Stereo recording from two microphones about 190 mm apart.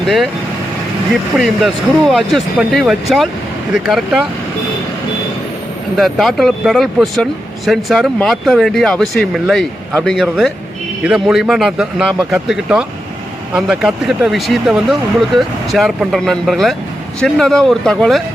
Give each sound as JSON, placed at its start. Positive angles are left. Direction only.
{"t": 1.4, "sound": "speech", "side_deg": 0}
{"t": 6.0, "sound": "speech", "side_deg": 0}